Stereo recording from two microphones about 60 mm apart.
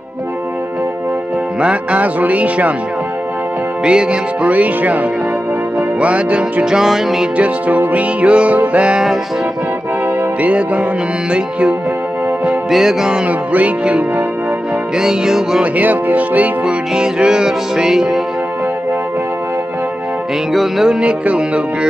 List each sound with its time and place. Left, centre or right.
1.6 s music: centre
3.8 s music: centre
6.6 s music: centre
7.3 s music: right
10.4 s music: right
12.6 s music: centre
15.0 s music: centre
15.6 s music: right
16.6 s music: centre
20.5 s music: centre